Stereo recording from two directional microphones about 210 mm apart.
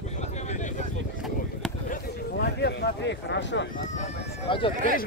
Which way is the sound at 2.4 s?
50° left (ahead or behind).